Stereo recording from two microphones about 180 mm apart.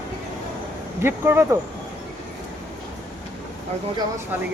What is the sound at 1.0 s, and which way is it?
Speech, 15° right (ahead or behind).